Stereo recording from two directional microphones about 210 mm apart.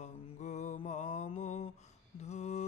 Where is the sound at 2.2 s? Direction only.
30° left (ahead or behind).